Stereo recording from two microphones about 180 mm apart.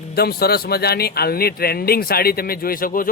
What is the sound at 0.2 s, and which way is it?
Speech, 60° left (ahead or behind).